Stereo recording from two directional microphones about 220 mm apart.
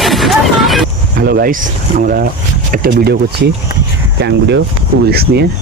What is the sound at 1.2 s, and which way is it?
Speech, 45° right (ahead or behind).